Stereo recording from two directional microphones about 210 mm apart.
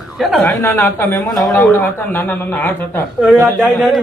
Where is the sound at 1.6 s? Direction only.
10° left (ahead or behind).